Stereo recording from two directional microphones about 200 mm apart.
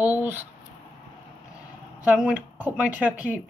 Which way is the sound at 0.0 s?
10° right (ahead or behind).